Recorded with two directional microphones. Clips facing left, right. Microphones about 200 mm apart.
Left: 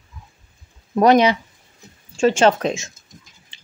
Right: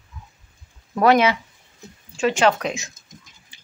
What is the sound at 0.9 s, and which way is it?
Speech, 20° left (ahead or behind).